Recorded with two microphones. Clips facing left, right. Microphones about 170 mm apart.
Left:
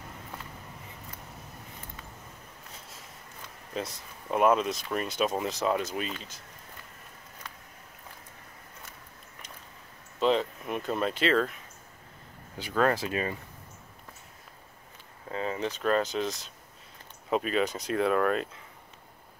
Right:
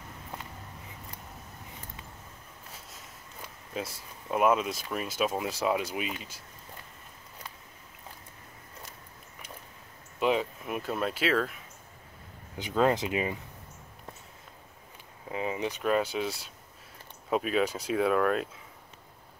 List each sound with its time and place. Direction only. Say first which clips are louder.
3.7 s speech: left 1 dB; 5° right (ahead or behind)
10.2 s speech: left 2 dB; 10° right (ahead or behind)
12.5 s speech: right 1 dB; 15° right (ahead or behind)
15.2 s speech: even; 15° right (ahead or behind)